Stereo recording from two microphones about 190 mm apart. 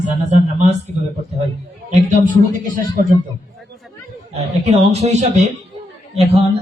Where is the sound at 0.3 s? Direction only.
40° right (ahead or behind).